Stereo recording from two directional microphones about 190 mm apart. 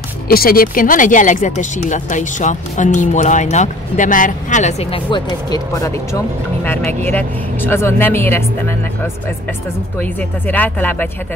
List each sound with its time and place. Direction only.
0.3 s speech: 50° left (ahead or behind); by 11.1 s 10° left (ahead or behind)